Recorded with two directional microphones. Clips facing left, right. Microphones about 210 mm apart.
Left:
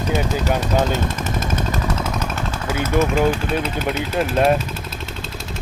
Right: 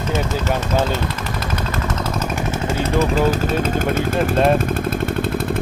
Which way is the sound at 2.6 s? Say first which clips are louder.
Left 1 dB; 30° right (ahead or behind).